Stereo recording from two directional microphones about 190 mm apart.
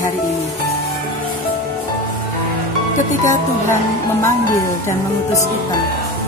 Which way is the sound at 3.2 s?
15° left (ahead or behind).